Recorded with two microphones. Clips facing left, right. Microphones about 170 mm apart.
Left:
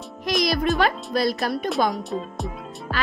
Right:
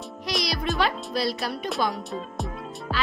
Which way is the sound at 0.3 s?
50° left (ahead or behind).